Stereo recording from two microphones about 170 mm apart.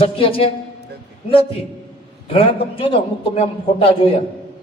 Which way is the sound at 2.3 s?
30° left (ahead or behind).